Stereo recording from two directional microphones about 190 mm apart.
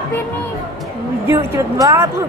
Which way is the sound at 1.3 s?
15° right (ahead or behind).